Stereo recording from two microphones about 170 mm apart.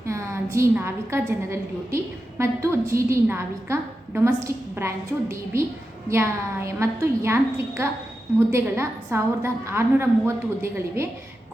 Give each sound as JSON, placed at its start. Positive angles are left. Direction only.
{"t": 0.0, "sound": "a woman's voice", "side_deg": -15}